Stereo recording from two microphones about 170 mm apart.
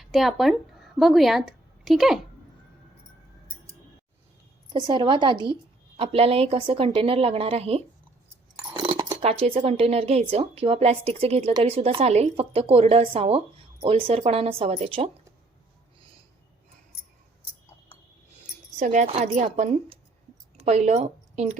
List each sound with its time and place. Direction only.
0.0 s speech: centre (ahead or behind)
4.7 s a woman's voice: 25° right (ahead or behind)
18.8 s a woman's voice: 45° right (ahead or behind)